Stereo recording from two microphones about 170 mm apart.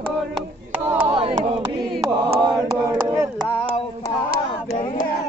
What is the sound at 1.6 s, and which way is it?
Chant, 30° right (ahead or behind).